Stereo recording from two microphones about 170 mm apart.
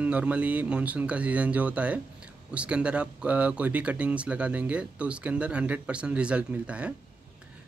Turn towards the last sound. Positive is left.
turn(degrees=-5)  # may be behind; listen again after turning